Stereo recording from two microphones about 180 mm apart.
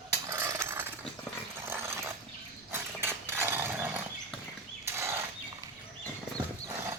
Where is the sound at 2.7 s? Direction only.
15° right (ahead or behind).